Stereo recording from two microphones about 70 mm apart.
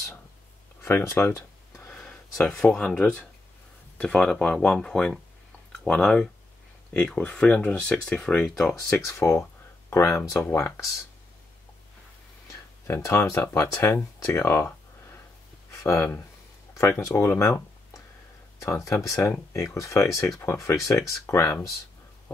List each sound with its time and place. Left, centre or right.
0.8 s speech: left
2.0 s speech: centre
8.9 s speech: left
12.4 s speech: left
15.7 s speech: left